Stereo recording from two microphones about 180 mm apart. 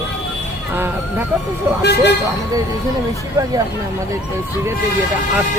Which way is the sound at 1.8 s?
65° left (ahead or behind).